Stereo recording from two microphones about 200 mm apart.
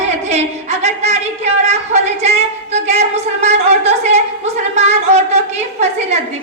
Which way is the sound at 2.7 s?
30° right (ahead or behind).